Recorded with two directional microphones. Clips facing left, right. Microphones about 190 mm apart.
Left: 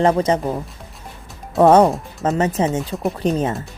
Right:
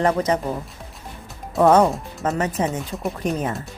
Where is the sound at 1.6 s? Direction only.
30° left (ahead or behind).